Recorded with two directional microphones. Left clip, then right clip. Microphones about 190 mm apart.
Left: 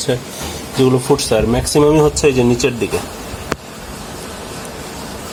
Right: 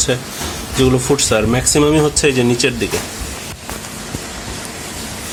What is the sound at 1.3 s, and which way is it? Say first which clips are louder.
Speech: even; centre (ahead or behind).